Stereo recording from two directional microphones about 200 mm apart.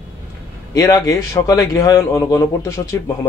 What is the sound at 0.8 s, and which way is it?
Speech, 15° left (ahead or behind).